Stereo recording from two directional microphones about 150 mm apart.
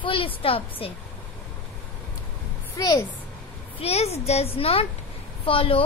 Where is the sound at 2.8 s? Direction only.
25° left (ahead or behind).